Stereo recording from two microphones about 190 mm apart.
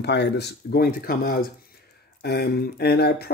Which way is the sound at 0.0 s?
60° left (ahead or behind).